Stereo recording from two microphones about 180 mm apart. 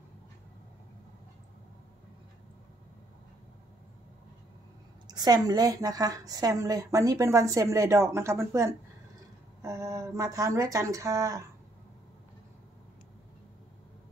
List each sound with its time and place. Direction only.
5.0 s a woman's voice: 20° right (ahead or behind)